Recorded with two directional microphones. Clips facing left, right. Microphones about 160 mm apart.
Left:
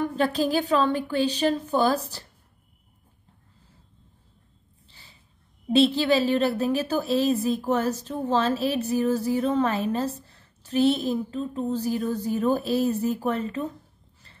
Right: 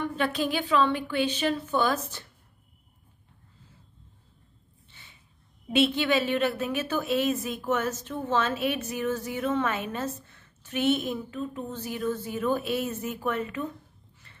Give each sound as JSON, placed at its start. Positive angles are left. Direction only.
{"t": 0.0, "sound": "a woman's voice", "side_deg": 40}
{"t": 4.8, "sound": "snort", "side_deg": 35}
{"t": 5.7, "sound": "a woman's voice", "side_deg": 35}
{"t": 14.2, "sound": "a sound", "side_deg": 35}